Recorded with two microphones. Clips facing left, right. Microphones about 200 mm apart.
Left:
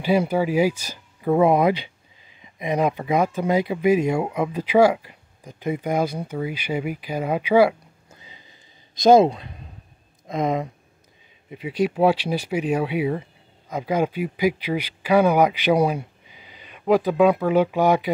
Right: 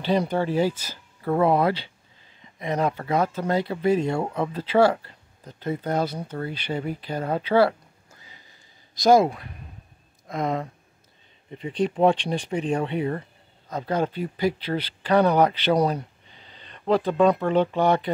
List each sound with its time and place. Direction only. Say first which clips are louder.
0.0 s speech: left 3 dB; 10° left (ahead or behind)
8.1 s a sound: left 4 dB; 20° left (ahead or behind)
10.2 s speech: left 3 dB; 20° left (ahead or behind)
11.5 s speech: left 2 dB; 5° left (ahead or behind)